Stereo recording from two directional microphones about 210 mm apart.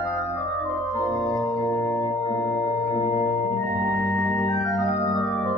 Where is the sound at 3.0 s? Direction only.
30° left (ahead or behind).